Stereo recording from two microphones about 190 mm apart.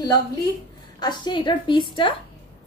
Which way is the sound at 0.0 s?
20° left (ahead or behind).